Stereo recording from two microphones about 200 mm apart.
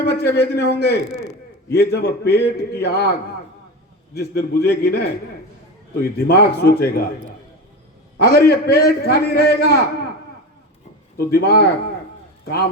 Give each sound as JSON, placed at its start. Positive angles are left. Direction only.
{"t": 0.0, "sound": "a man's voice", "side_deg": 55}
{"t": 8.2, "sound": "a man's voice", "side_deg": 50}
{"t": 11.3, "sound": "a man's voice", "side_deg": 55}